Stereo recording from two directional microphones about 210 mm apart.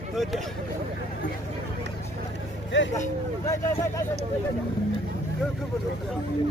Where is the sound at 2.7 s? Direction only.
60° left (ahead or behind).